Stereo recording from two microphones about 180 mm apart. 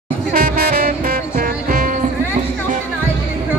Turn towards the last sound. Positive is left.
turn(degrees=-55)  # may be behind; listen again after turning